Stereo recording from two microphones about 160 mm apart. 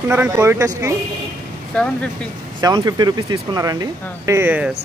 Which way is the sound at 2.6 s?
25° right (ahead or behind).